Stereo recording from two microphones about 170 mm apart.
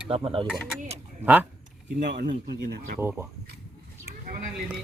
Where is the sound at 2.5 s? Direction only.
75° right (ahead or behind).